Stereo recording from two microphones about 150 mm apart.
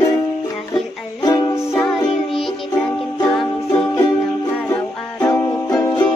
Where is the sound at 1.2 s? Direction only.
25° left (ahead or behind).